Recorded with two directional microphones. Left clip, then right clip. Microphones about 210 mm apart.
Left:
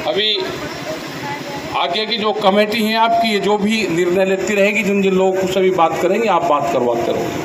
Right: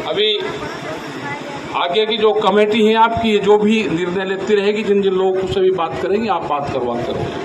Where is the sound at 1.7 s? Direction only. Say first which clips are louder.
Right 2 dB; 50° left (ahead or behind).